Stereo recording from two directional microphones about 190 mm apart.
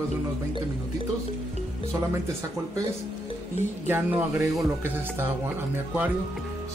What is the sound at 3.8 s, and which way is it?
Speech, 10° right (ahead or behind).